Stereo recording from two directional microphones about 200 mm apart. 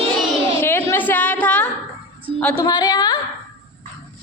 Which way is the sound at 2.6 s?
20° left (ahead or behind).